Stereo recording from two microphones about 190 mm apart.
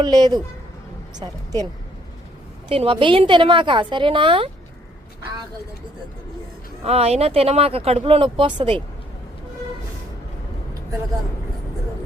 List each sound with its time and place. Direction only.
0.0 s a woman's voice: 20° right (ahead or behind)
2.6 s a woman's voice: 30° right (ahead or behind)
6.8 s speech: 35° right (ahead or behind)